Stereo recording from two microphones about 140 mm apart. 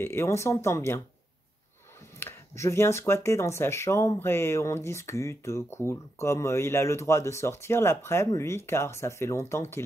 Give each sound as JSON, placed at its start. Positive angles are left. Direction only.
{"t": 0.0, "sound": "speech", "side_deg": 15}
{"t": 2.1, "sound": "speech", "side_deg": 20}